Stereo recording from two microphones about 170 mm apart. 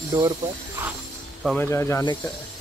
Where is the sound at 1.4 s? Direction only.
10° left (ahead or behind).